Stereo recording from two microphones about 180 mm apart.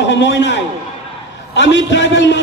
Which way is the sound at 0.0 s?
85° left.